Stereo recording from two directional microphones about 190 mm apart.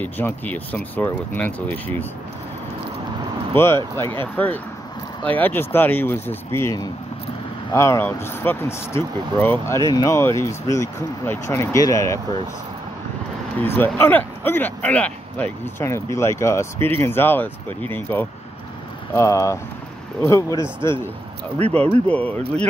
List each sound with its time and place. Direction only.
0.0 s speech: 10° left (ahead or behind)
3.5 s speech: 15° left (ahead or behind)
13.6 s speech: 10° left (ahead or behind)